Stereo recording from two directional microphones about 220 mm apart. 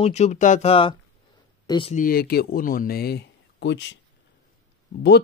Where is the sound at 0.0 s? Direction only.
30° left (ahead or behind).